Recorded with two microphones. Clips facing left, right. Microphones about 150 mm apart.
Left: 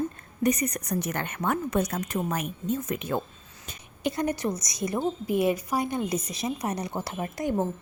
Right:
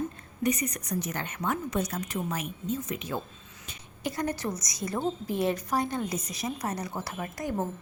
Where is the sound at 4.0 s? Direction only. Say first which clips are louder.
Left 4 dB; 20° left (ahead or behind).